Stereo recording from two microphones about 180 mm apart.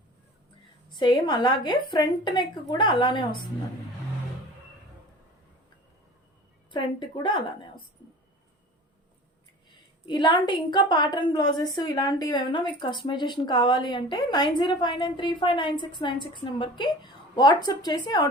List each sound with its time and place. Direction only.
0.9 s a woman's voice: 25° left (ahead or behind)
6.7 s speech: 25° left (ahead or behind)
10.1 s a woman's voice: 25° left (ahead or behind)